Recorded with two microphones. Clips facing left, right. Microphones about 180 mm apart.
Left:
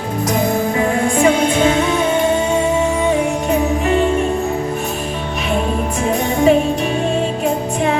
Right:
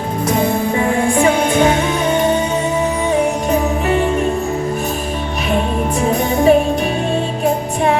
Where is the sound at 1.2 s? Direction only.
35° right (ahead or behind).